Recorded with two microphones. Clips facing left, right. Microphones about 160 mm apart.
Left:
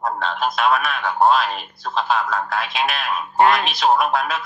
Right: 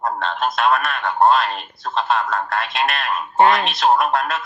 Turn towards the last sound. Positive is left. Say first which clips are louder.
# right 1 dB
turn(degrees=0)  # may be behind; listen again after turning